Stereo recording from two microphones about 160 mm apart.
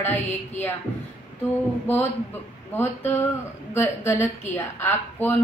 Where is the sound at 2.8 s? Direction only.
15° left (ahead or behind).